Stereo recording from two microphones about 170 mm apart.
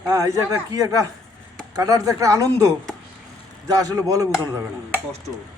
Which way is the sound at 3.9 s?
20° right (ahead or behind).